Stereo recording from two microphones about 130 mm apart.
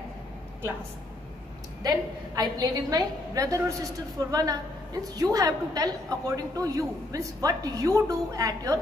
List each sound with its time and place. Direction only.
1.8 s a woman's voice: 30° right (ahead or behind)